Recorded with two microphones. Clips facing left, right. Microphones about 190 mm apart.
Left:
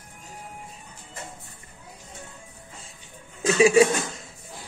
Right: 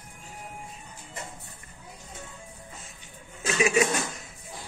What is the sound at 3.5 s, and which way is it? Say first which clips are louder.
Speech: left 7 dB; 30° left (ahead or behind).